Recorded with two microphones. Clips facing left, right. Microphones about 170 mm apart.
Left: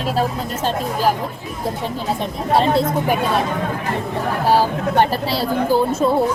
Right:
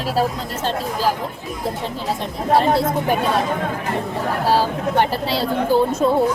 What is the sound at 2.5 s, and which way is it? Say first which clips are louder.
Speech: even; 20° left (ahead or behind).